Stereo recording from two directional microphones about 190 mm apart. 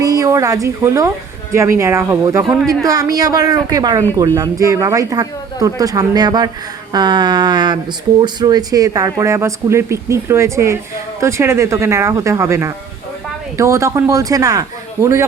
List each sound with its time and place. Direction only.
0.0 s speech: 20° right (ahead or behind)
2.5 s speech: centre (ahead or behind)
2.8 s speech: 20° right (ahead or behind)